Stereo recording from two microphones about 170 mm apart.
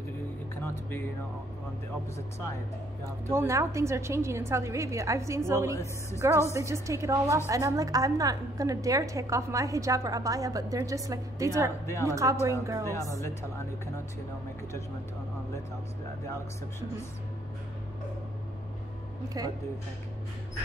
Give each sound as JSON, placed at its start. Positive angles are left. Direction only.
{"t": 0.6, "sound": "music", "side_deg": 10}
{"t": 3.3, "sound": "a woman's voice", "side_deg": -15}
{"t": 11.8, "sound": "speech", "side_deg": 15}
{"t": 12.1, "sound": "a woman's voice", "side_deg": -20}
{"t": 19.2, "sound": "a woman's voice", "side_deg": -20}